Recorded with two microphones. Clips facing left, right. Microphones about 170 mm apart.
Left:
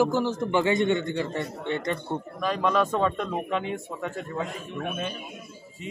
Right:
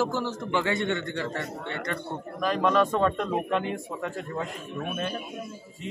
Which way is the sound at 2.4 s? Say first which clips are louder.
Right 2 dB; centre (ahead or behind).